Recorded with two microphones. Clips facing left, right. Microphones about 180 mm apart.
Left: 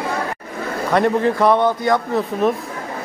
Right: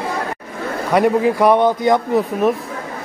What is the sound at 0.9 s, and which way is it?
A man's voice, 10° right (ahead or behind).